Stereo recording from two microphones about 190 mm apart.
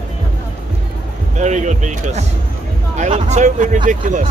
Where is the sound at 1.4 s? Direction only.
40° right (ahead or behind).